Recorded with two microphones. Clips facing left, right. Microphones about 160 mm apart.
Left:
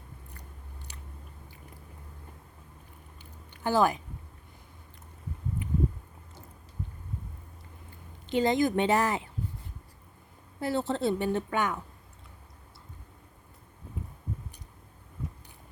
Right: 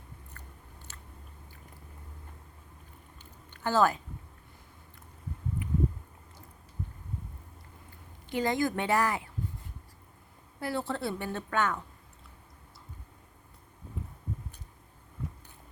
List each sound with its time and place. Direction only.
0.9 s biting: 15° left (ahead or behind)
3.2 s a sound: 15° left (ahead or behind)
8.3 s a woman's voice: 20° left (ahead or behind)
10.6 s a woman's voice: 25° left (ahead or behind)